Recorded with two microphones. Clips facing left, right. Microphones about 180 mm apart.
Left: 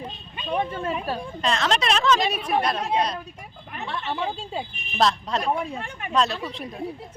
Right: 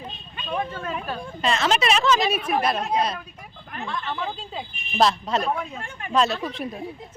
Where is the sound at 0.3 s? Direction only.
20° left (ahead or behind).